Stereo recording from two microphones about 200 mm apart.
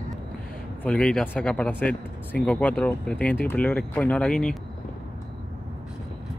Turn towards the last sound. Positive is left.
turn(degrees=5)  # may be behind; listen again after turning